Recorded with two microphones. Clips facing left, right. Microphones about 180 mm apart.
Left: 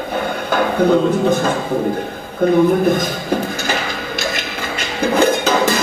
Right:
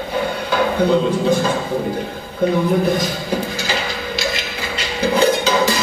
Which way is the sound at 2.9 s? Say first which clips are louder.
Left 2 dB; 50° left (ahead or behind).